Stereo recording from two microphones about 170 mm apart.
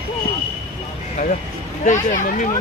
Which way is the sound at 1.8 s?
50° left (ahead or behind).